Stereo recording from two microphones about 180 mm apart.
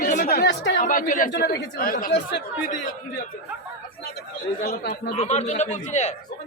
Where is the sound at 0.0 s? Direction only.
50° left (ahead or behind).